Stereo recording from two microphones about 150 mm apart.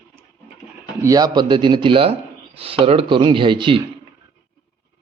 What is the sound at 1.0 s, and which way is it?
Speech, 25° right (ahead or behind).